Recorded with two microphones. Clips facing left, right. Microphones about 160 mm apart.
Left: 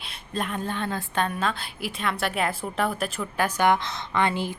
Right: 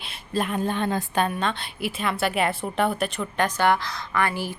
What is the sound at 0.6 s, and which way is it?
Speech, 15° right (ahead or behind).